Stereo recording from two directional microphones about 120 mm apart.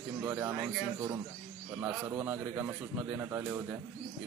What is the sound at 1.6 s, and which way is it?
Speech, 20° right (ahead or behind).